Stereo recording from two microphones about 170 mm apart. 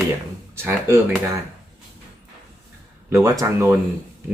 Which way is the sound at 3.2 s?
20° right (ahead or behind).